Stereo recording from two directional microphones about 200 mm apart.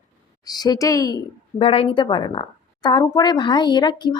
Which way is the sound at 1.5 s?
30° left (ahead or behind).